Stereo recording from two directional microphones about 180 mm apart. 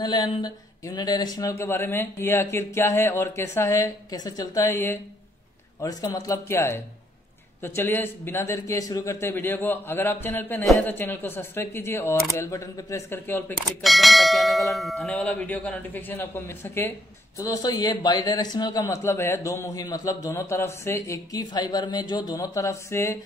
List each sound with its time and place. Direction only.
0.0 s speech: 25° left (ahead or behind)
13.8 s speech: centre (ahead or behind); by 23.1 s 15° left (ahead or behind)